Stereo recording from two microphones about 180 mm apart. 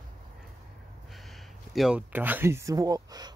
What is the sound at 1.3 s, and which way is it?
Speech, centre (ahead or behind).